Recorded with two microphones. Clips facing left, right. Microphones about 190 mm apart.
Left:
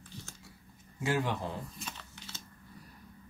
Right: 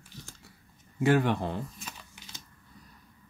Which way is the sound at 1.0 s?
65° right (ahead or behind).